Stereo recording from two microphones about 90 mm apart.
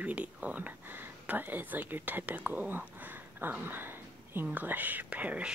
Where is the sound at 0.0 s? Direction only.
15° right (ahead or behind).